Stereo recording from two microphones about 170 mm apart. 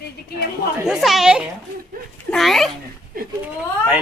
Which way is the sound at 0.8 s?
Centre (ahead or behind).